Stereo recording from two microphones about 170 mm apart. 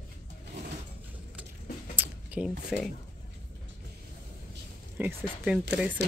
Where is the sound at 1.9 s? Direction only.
10° right (ahead or behind).